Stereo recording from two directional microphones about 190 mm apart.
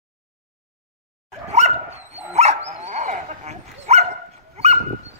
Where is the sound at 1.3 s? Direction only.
35° right (ahead or behind).